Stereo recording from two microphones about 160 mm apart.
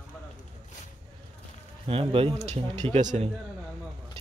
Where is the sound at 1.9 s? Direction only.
35° right (ahead or behind).